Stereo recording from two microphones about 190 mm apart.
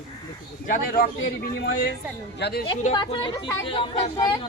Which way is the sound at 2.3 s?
60° left (ahead or behind).